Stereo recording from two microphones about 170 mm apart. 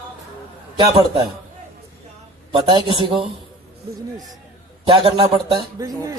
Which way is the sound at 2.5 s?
30° right (ahead or behind).